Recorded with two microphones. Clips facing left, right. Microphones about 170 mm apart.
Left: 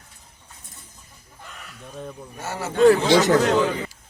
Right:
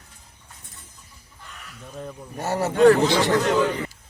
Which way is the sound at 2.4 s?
40° right (ahead or behind).